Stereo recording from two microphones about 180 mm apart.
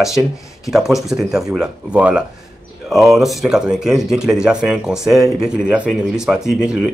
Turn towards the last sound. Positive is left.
turn(degrees=-5)  # may be behind; listen again after turning